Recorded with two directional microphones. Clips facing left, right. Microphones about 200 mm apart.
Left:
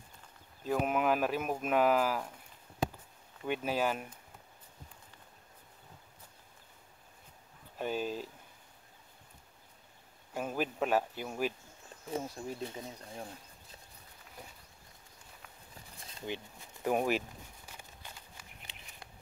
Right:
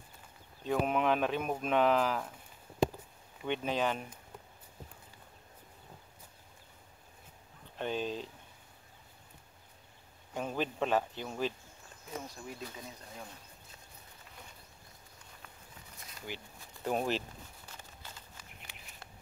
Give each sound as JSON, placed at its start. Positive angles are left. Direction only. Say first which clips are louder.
{"t": 0.7, "sound": "speech", "louder": "even", "side_deg": 5}
{"t": 3.4, "sound": "speech", "louder": "even", "side_deg": 5}
{"t": 7.7, "sound": "speech", "louder": "even", "side_deg": 5}
{"t": 10.3, "sound": "speech", "louder": "even", "side_deg": 5}
{"t": 12.1, "sound": "speech", "louder": "left 5 dB", "side_deg": 30}
{"t": 16.0, "sound": "a sound", "louder": "left 4 dB", "side_deg": 30}
{"t": 16.8, "sound": "speech", "louder": "left 2 dB", "side_deg": 10}
{"t": 17.6, "sound": "a sound", "louder": "even", "side_deg": 15}